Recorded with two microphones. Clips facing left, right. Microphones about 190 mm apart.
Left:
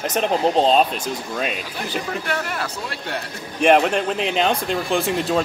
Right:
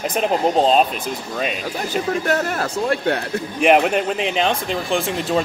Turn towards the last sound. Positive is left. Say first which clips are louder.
# even
turn(degrees=0)  # may be behind; listen again after turning